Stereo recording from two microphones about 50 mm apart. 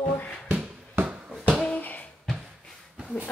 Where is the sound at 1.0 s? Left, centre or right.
Right.